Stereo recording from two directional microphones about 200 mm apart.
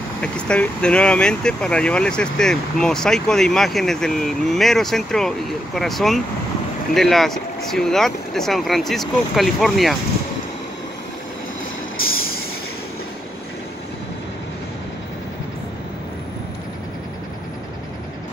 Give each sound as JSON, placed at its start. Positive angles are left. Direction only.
{"t": 0.2, "sound": "speech", "side_deg": 5}
{"t": 12.0, "sound": "vehicle", "side_deg": 90}